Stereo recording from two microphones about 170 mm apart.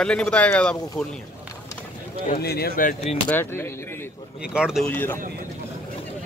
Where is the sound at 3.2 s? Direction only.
10° left (ahead or behind).